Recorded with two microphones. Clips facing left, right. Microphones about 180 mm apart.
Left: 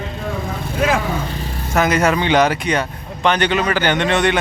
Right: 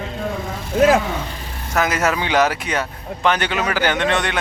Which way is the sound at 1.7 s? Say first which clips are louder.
Left 3 dB; centre (ahead or behind).